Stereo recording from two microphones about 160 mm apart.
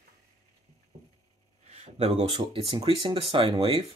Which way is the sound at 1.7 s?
40° right (ahead or behind).